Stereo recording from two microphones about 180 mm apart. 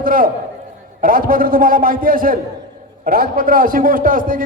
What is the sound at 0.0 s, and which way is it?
A man's voice, 50° right (ahead or behind).